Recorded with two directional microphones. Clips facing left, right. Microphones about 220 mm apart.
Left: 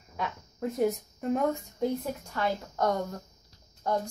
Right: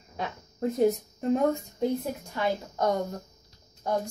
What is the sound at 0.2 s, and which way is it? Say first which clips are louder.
A woman's voice: right 3 dB; 35° right (ahead or behind).